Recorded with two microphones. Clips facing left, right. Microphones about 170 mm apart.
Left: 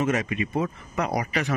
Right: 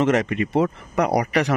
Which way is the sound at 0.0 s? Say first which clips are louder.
Right 5 dB; 75° right (ahead or behind).